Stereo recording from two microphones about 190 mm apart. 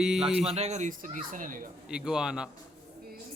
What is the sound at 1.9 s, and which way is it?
Fowl, 5° right (ahead or behind).